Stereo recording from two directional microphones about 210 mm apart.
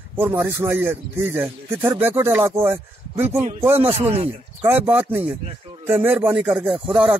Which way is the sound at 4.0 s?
30° right (ahead or behind).